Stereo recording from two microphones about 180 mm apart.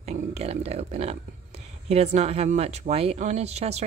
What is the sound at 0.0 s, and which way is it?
Speech, 35° right (ahead or behind).